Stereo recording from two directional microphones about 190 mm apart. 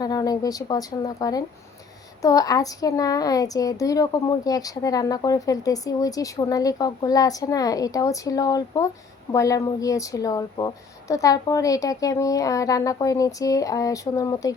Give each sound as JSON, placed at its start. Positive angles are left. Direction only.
{"t": 0.0, "sound": "a child's voice", "side_deg": 20}